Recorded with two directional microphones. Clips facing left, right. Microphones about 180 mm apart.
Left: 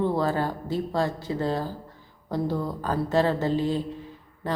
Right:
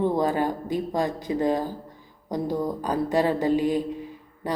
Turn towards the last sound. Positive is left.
turn(degrees=-15)  # may be behind; listen again after turning